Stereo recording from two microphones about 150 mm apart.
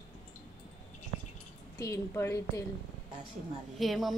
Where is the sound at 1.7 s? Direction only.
20° left (ahead or behind).